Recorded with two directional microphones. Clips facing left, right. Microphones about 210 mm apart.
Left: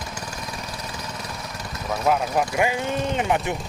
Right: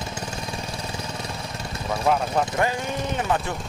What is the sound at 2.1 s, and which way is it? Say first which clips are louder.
Speech: left 1 dB; 10° left (ahead or behind).